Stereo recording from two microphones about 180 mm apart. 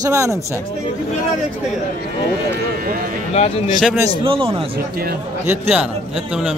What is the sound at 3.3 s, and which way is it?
Speech, 35° left (ahead or behind).